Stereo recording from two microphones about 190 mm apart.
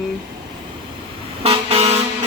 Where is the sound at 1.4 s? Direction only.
35° right (ahead or behind).